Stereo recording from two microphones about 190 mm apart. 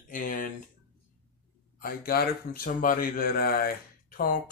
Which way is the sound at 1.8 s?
50° left (ahead or behind).